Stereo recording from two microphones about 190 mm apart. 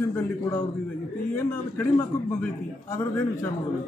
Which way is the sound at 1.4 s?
10° left (ahead or behind).